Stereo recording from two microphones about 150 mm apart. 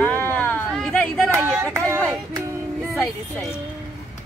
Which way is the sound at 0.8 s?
5° left (ahead or behind).